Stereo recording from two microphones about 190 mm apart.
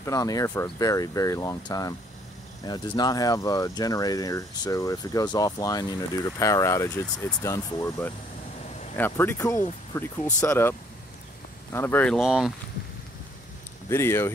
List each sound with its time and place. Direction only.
0.0 s speech: 15° left (ahead or behind); by 12.5 s 5° right (ahead or behind)
13.8 s speech: 15° left (ahead or behind)